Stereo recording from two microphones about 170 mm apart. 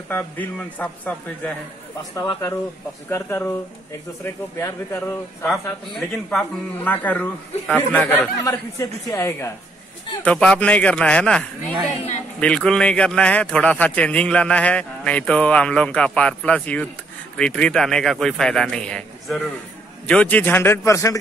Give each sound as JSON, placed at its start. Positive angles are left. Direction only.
{"t": 0.1, "sound": "a man's voice", "side_deg": 10}
{"t": 5.5, "sound": "a man's voice", "side_deg": 0}